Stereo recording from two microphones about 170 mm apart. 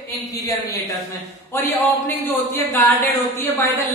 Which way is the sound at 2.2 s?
10° left (ahead or behind).